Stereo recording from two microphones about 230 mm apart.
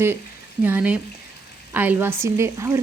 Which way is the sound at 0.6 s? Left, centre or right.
Centre.